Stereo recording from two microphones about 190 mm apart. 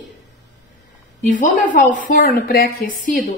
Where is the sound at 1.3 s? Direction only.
45° left (ahead or behind).